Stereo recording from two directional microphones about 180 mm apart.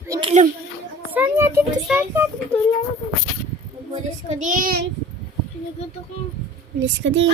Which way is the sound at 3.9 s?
40° right (ahead or behind).